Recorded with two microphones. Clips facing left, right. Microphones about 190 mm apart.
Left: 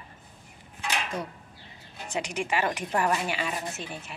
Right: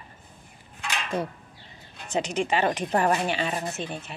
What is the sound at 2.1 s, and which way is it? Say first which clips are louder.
Speech: right 4 dB; 25° right (ahead or behind).